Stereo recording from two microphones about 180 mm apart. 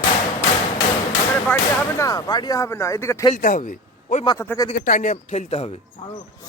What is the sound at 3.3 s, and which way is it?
Speech, 45° left (ahead or behind).